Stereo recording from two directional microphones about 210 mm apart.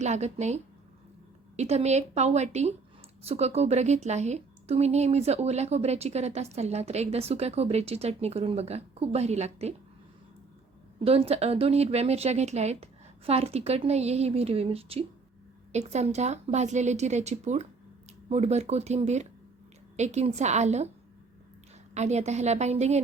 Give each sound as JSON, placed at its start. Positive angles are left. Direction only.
{"t": 0.0, "sound": "a woman's voice", "side_deg": -30}
{"t": 11.0, "sound": "a woman's voice", "side_deg": -30}
{"t": 21.9, "sound": "a woman's voice", "side_deg": -30}